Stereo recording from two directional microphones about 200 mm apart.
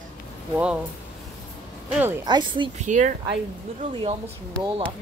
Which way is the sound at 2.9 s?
40° right (ahead or behind).